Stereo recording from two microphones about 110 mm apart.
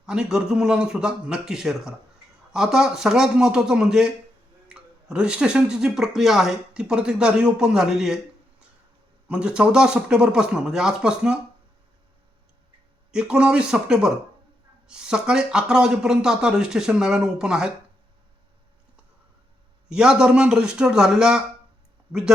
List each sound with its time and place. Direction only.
0.0 s a man's voice: 5° right (ahead or behind)
9.2 s speech: 10° right (ahead or behind)
13.1 s speech: 5° right (ahead or behind)
19.9 s speech: 5° right (ahead or behind)